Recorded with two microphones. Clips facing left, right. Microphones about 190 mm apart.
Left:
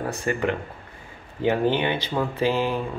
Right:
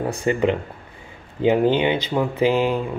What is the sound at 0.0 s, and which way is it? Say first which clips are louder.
Speech: right 5 dB; 20° right (ahead or behind).